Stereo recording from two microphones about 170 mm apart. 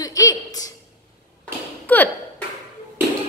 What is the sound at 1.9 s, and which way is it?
Speech, 10° left (ahead or behind).